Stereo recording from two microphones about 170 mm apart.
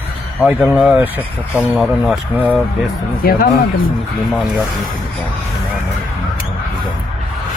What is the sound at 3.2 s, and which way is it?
Speech, 65° left (ahead or behind).